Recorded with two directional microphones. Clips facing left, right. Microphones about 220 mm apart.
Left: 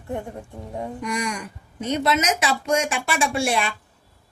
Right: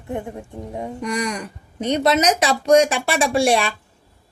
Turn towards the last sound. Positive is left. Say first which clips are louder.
# right 5 dB
turn(degrees=-35)  # may be behind; listen again after turning